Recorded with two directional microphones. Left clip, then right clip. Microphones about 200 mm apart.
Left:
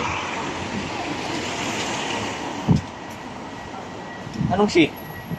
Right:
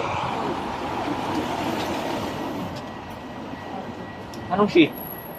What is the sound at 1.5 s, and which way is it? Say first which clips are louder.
Train: even; 55° right (ahead or behind).